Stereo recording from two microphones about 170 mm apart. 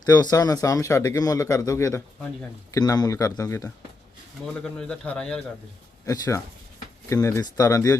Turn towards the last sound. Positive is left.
turn(degrees=20)  # may be behind; listen again after turning